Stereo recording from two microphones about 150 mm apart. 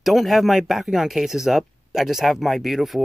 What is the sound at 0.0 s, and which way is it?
Speech, centre (ahead or behind).